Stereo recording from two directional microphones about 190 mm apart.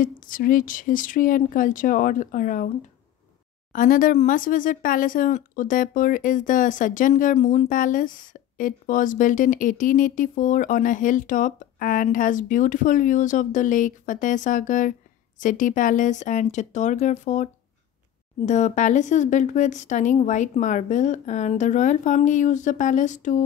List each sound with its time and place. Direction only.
0.0 s speech: 45° left (ahead or behind)
3.7 s speech: 45° left (ahead or behind)